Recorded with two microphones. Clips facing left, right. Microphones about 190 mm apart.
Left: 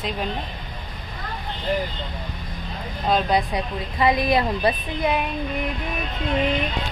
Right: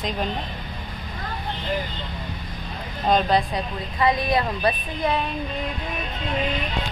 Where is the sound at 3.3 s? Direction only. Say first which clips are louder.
Even; 20° left (ahead or behind).